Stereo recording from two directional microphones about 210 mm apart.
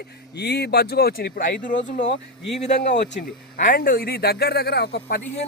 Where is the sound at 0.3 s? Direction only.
50° left (ahead or behind).